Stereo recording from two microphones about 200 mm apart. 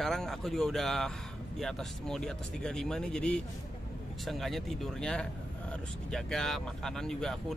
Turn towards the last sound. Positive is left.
turn(degrees=0)  # may be behind; listen again after turning